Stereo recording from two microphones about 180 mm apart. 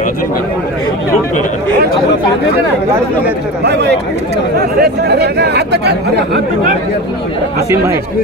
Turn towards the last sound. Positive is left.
turn(degrees=-70)  # may be behind; listen again after turning